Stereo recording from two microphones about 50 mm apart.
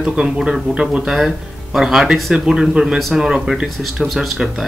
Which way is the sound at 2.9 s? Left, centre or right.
Centre.